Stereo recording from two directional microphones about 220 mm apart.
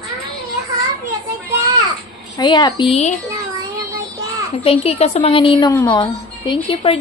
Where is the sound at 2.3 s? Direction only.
20° left (ahead or behind).